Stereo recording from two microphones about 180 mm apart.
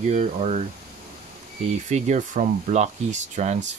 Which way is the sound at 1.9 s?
40° right (ahead or behind).